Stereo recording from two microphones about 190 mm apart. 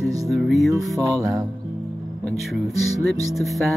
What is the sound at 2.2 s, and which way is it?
Music, centre (ahead or behind).